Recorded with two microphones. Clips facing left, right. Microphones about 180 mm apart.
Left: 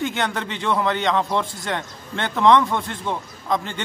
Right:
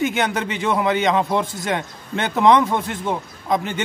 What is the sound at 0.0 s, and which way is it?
A man's voice, 15° right (ahead or behind).